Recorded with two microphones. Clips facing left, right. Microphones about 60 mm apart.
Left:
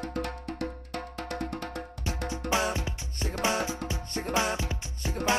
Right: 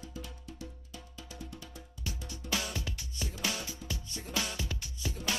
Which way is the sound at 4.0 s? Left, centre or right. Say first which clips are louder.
Left 11 dB; left.